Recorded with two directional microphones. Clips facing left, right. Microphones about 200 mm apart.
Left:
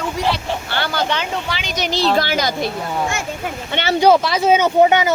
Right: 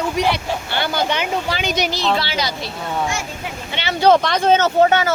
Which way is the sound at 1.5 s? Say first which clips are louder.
Right 4 dB; 50° right (ahead or behind).